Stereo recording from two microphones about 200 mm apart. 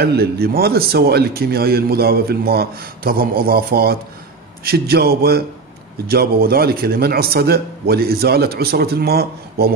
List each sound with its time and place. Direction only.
0.0 s a man's voice: 50° right (ahead or behind)